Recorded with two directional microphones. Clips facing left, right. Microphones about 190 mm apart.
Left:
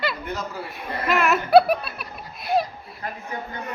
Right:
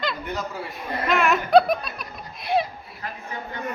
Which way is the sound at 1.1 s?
5° left (ahead or behind).